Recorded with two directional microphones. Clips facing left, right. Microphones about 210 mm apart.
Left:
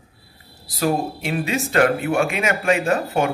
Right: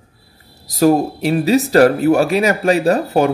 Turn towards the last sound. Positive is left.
turn(degrees=-35)  # may be behind; listen again after turning